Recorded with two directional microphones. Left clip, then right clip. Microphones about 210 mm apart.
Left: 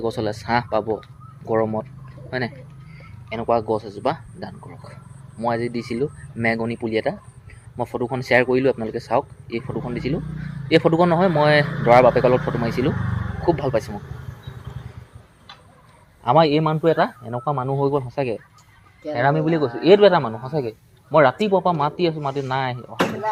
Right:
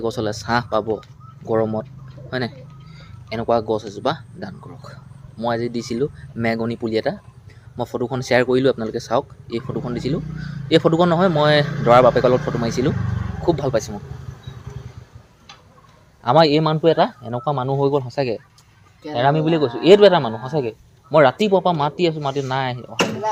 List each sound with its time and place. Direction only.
0.0 s a man's voice: 10° right (ahead or behind)
3.2 s a man's voice: 15° right (ahead or behind)
16.2 s a man's voice: 20° right (ahead or behind)
20.4 s a man's voice: 5° right (ahead or behind)
21.1 s a man's voice: 15° right (ahead or behind)